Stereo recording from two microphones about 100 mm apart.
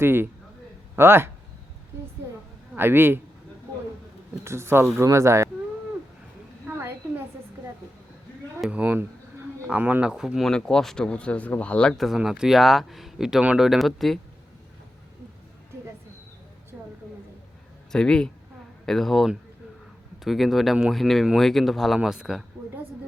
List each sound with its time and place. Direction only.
0.0 s speech: 25° right (ahead or behind)
2.7 s speech: 20° right (ahead or behind)
4.4 s speech: 25° right (ahead or behind)
6.7 s a sound: 20° right (ahead or behind)
8.7 s speech: 15° right (ahead or behind); by 14.2 s centre (ahead or behind)
17.9 s speech: 10° left (ahead or behind)